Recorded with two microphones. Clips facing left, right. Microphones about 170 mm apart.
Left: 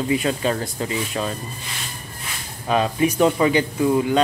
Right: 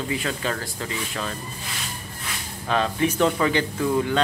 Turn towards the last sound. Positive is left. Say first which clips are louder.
# left 4 dB
turn(degrees=15)  # may be behind; listen again after turning